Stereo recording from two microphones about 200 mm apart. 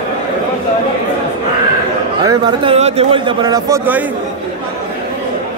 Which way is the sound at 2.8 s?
30° right (ahead or behind).